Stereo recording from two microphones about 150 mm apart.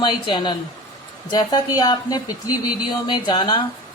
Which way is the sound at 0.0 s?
35° left (ahead or behind).